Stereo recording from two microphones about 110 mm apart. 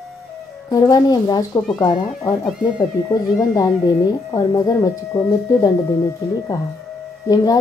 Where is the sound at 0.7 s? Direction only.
35° left (ahead or behind).